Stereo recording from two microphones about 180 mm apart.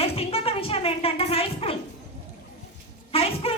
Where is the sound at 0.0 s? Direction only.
30° left (ahead or behind).